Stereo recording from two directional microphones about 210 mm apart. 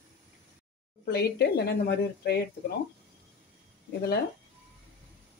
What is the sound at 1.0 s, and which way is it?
Speech, 50° left (ahead or behind).